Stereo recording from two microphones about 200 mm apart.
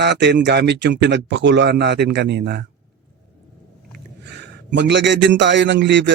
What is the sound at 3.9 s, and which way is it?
A man's voice, 60° right (ahead or behind).